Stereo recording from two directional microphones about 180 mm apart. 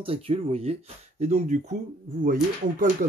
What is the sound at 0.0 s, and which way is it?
Speech, 30° right (ahead or behind).